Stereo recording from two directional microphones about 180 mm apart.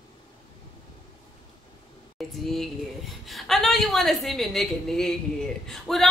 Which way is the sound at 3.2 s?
Centre (ahead or behind).